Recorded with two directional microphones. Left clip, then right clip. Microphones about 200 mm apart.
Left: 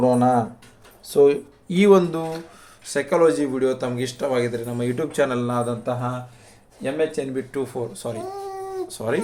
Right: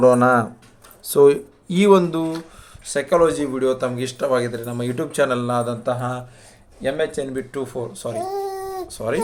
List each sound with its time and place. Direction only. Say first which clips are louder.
0.0 s speech: right 4 dB; 25° right (ahead or behind)
1.6 s speech: right 1 dB; 10° right (ahead or behind)